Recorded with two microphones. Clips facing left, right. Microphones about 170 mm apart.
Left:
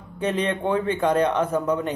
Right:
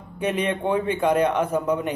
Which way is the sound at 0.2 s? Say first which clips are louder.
Even; 10° right (ahead or behind).